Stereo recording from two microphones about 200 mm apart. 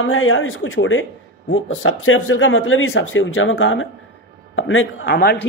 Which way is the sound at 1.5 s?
90° left.